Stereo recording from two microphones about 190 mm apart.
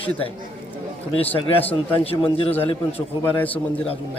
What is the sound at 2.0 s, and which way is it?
Speech, 30° left (ahead or behind).